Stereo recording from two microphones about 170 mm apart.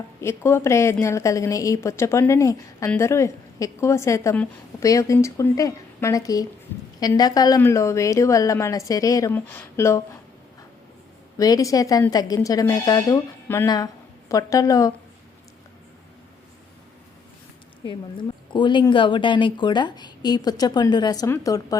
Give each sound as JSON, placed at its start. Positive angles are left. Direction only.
{"t": 0.2, "sound": "a woman's voice", "side_deg": 15}
{"t": 11.3, "sound": "speech", "side_deg": 20}
{"t": 17.8, "sound": "speech", "side_deg": 25}